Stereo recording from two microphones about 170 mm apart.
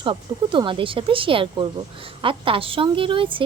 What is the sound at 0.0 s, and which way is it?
A woman's voice, 30° right (ahead or behind).